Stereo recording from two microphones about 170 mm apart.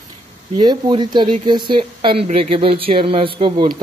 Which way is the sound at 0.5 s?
25° right (ahead or behind).